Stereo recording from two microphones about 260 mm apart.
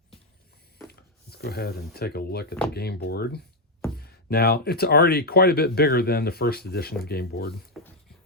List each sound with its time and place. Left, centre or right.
0.9 s speech: left